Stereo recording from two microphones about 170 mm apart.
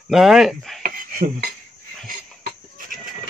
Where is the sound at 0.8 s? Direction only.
55° right (ahead or behind).